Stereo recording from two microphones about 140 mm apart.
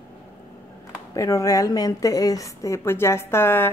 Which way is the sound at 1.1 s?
20° left (ahead or behind).